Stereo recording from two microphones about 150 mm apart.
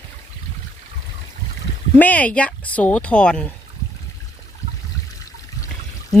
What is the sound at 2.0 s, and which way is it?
Speech, 10° left (ahead or behind).